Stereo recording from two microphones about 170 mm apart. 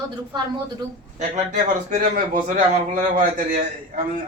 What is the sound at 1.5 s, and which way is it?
A man's voice, 50° right (ahead or behind).